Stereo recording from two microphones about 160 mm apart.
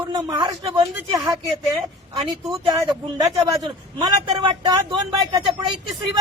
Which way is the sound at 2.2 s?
30° right (ahead or behind).